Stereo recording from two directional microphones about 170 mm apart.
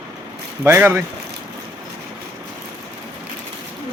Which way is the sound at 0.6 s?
15° right (ahead or behind).